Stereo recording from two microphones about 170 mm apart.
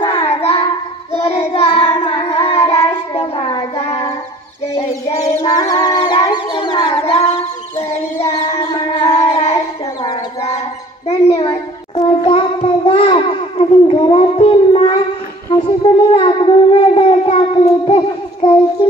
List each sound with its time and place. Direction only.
0.0 s child singing: 35° left (ahead or behind)
5.2 s music: 20° left (ahead or behind)
6.3 s a sound: 30° left (ahead or behind)
8.2 s music: 35° left (ahead or behind)
9.0 s child singing: 40° left (ahead or behind)
11.1 s a sound: 40° left (ahead or behind)
11.9 s babbling: 30° left (ahead or behind)
15.5 s music: 30° left (ahead or behind)
16.9 s child singing: 40° left (ahead or behind)